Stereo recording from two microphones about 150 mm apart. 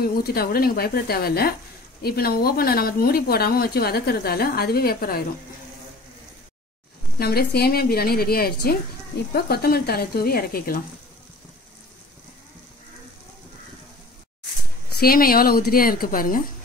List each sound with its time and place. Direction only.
0.0 s a woman's voice: 90° left
7.2 s a woman's voice: 90° left
15.0 s a woman's voice: 80° left